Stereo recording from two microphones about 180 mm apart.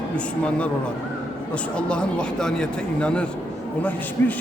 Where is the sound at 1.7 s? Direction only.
5° left (ahead or behind).